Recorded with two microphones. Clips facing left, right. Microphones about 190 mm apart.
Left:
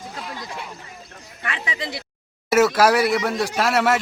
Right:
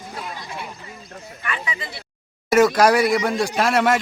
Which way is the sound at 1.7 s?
90° left.